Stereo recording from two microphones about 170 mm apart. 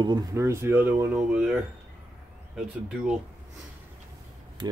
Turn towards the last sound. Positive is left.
turn(degrees=-25)  # may be behind; listen again after turning